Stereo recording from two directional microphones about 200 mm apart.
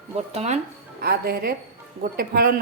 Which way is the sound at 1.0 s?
50° right (ahead or behind).